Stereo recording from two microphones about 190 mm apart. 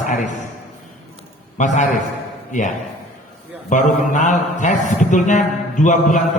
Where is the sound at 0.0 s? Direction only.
40° left (ahead or behind).